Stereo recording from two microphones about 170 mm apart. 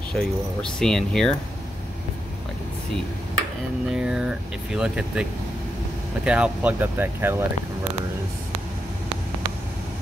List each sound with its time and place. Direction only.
0.1 s speech: 5° left (ahead or behind)
3.9 s speech: 5° right (ahead or behind)
6.2 s speech: 5° right (ahead or behind)